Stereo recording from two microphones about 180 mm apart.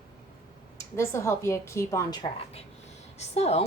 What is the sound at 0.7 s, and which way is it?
A woman's voice, 15° left (ahead or behind).